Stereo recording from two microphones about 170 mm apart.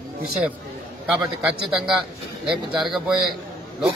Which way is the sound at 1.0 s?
5° right (ahead or behind).